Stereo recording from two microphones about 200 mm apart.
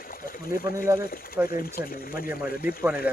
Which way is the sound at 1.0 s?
50° left (ahead or behind).